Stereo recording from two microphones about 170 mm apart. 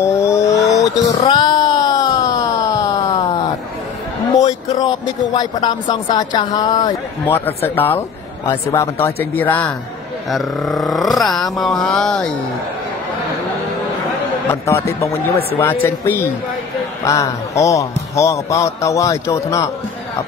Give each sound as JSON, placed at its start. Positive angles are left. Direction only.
{"t": 0.0, "sound": "vehicle", "side_deg": 15}
{"t": 0.5, "sound": "vehicle", "side_deg": 45}
{"t": 1.2, "sound": "cat", "side_deg": 25}
{"t": 4.4, "sound": "a man's voice", "side_deg": 20}
{"t": 7.2, "sound": "speech", "side_deg": 10}
{"t": 14.5, "sound": "a man's voice", "side_deg": 15}